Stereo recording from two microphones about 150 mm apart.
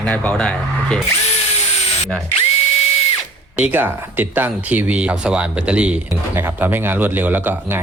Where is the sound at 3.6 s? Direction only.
10° right (ahead or behind).